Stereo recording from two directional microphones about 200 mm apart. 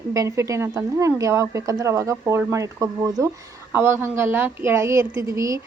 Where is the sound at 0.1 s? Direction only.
15° right (ahead or behind).